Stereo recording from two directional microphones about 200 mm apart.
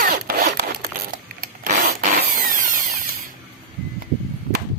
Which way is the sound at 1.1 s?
45° right (ahead or behind).